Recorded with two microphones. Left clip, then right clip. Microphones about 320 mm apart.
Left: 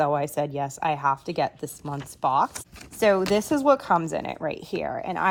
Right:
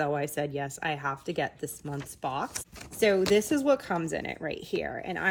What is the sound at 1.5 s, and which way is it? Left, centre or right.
Speech, left.